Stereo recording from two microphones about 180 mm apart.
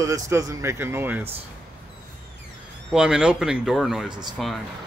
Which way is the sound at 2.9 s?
5° right (ahead or behind).